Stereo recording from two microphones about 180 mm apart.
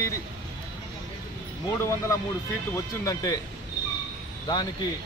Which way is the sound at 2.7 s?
15° left (ahead or behind).